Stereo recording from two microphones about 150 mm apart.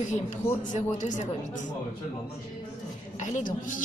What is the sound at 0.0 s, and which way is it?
Speech, 55° left (ahead or behind).